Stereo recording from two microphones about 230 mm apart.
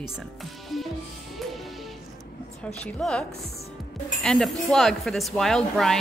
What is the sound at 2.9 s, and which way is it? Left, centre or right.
Speech, centre.